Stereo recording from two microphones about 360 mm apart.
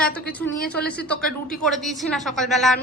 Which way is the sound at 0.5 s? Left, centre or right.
Left.